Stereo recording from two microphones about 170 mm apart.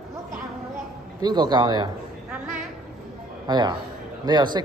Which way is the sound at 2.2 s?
10° right (ahead or behind).